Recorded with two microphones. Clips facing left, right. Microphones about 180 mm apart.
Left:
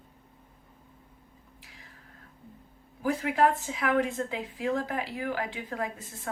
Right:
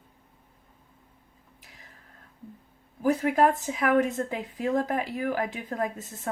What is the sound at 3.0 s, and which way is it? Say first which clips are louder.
Speech: right 3 dB; 45° right (ahead or behind).